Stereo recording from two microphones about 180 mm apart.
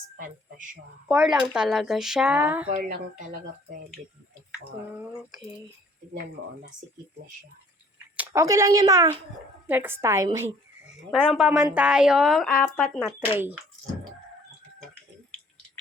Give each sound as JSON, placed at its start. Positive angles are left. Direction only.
{"t": 0.2, "sound": "speech", "side_deg": -50}
{"t": 1.0, "sound": "a woman's voice", "side_deg": -5}
{"t": 2.6, "sound": "speech", "side_deg": -45}
{"t": 4.9, "sound": "a woman's voice", "side_deg": -5}
{"t": 8.1, "sound": "a woman's voice", "side_deg": -10}
{"t": 11.1, "sound": "a woman's voice", "side_deg": 0}